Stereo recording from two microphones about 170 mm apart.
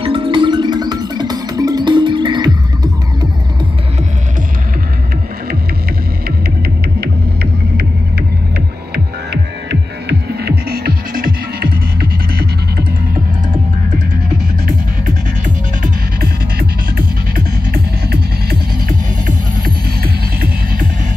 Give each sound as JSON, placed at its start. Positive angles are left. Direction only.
{"t": 0.0, "sound": "music", "side_deg": -30}
{"t": 6.2, "sound": "music", "side_deg": -65}
{"t": 8.9, "sound": "music", "side_deg": -80}
{"t": 10.7, "sound": "music", "side_deg": -65}
{"t": 15.0, "sound": "music", "side_deg": -50}